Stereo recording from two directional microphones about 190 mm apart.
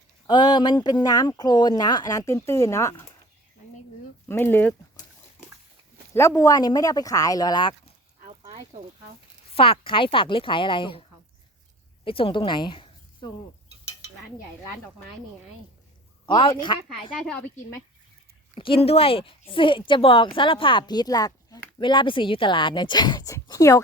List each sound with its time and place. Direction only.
0.3 s speech: 25° left (ahead or behind)
4.3 s speech: 10° left (ahead or behind)
6.1 s speech: 15° left (ahead or behind)
9.5 s speech: 30° left (ahead or behind)
12.0 s speech: 30° left (ahead or behind)
16.2 s speech: 25° left (ahead or behind)
16.9 s speech: 5° left (ahead or behind)
18.5 s speech: 30° left (ahead or behind)